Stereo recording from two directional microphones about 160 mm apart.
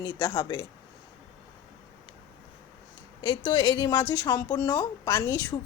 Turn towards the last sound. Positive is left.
turn(degrees=20)  # may be behind; listen again after turning